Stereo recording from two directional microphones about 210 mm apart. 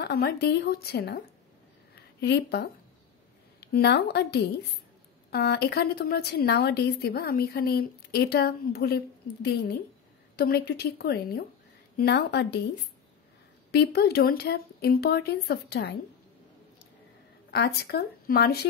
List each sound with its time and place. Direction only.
0.0 s a woman's voice: 50° left (ahead or behind)
13.7 s a woman's voice: 50° left (ahead or behind)
17.5 s a woman's voice: 50° left (ahead or behind)